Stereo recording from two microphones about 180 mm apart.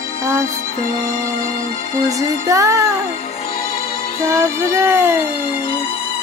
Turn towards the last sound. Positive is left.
turn(degrees=-15)  # may be behind; listen again after turning